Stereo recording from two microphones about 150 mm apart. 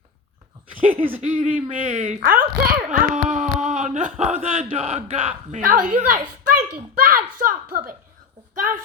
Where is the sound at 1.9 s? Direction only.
55° right (ahead or behind); by 2.8 s 75° right (ahead or behind).